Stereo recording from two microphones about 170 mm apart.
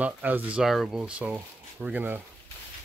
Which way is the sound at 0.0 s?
10° right (ahead or behind).